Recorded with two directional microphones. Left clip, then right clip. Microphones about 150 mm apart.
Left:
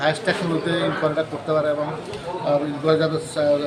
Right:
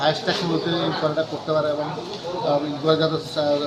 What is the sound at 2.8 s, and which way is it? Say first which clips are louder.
Speech: even; 15° left (ahead or behind).